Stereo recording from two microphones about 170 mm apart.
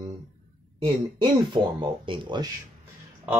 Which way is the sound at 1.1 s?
30° right (ahead or behind).